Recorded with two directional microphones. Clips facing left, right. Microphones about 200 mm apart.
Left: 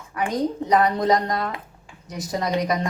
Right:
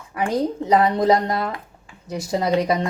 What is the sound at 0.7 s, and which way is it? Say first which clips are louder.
Speech: right 3 dB; 25° right (ahead or behind).